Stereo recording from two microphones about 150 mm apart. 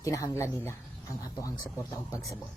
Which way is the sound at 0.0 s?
20° left (ahead or behind).